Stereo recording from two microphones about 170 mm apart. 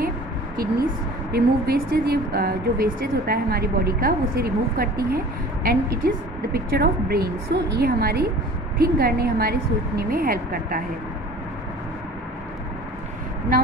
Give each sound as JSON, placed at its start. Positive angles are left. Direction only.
{"t": 1.3, "sound": "speech", "side_deg": -65}